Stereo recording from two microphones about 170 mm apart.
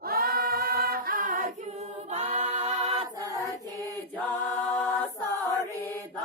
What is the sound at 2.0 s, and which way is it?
A capella, 40° right (ahead or behind).